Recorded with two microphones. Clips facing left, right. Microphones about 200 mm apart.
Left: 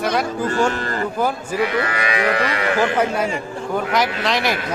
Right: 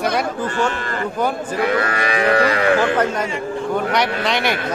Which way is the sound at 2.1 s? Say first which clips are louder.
Right 5 dB; 35° right (ahead or behind).